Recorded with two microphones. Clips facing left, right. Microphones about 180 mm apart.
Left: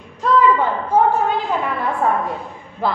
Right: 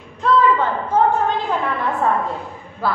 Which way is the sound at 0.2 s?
10° left (ahead or behind).